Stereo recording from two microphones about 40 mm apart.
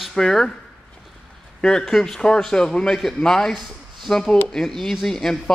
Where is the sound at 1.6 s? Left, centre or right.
Centre.